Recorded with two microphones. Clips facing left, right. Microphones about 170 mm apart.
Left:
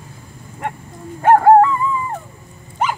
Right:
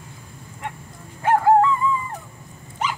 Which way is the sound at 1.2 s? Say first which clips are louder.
Left 6 dB; 55° left (ahead or behind).